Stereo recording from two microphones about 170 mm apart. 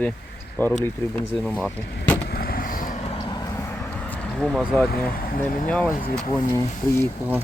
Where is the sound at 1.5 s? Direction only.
Centre (ahead or behind).